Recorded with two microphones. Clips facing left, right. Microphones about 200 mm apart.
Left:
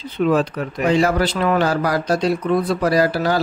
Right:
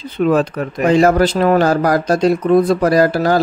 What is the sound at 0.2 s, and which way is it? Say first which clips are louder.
Speech: right 3 dB; 50° right (ahead or behind).